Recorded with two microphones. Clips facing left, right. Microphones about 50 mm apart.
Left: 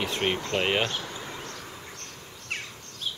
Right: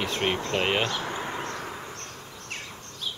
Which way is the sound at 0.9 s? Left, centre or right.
Right.